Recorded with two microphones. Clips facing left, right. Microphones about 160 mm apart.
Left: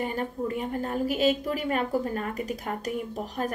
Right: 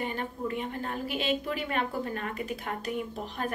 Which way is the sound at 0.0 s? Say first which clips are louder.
Left 4 dB; 40° left (ahead or behind).